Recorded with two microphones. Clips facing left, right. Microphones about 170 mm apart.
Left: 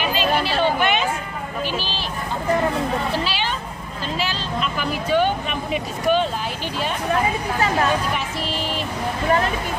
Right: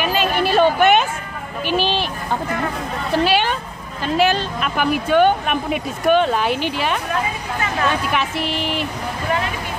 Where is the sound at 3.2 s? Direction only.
55° right (ahead or behind); by 7.0 s 70° right (ahead or behind).